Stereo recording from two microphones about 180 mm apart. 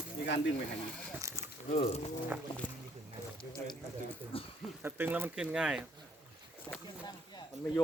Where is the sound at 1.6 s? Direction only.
35° left (ahead or behind).